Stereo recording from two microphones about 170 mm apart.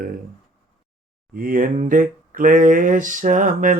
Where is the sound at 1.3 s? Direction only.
55° right (ahead or behind).